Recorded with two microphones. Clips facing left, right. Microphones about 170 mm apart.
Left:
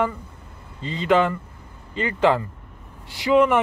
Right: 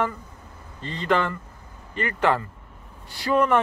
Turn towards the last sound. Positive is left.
turn(degrees=10)  # may be behind; listen again after turning